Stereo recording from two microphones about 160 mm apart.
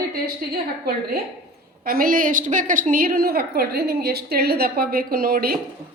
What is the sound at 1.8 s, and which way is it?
A woman's voice, 65° right (ahead or behind).